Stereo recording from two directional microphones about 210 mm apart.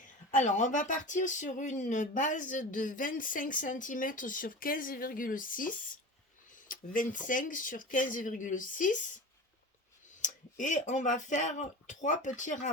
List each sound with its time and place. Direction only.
0.0 s speech: 35° left (ahead or behind)
10.2 s speech: 35° left (ahead or behind)